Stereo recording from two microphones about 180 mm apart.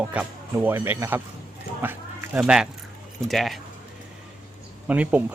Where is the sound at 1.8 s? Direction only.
10° right (ahead or behind).